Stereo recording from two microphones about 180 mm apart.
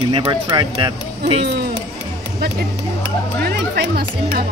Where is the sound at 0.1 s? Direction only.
25° right (ahead or behind).